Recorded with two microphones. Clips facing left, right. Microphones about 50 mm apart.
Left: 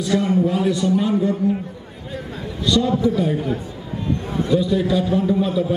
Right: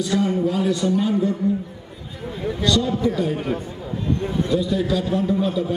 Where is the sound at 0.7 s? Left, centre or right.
Centre.